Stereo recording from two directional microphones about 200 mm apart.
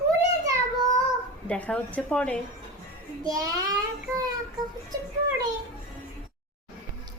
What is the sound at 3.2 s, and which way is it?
Speech, 20° right (ahead or behind).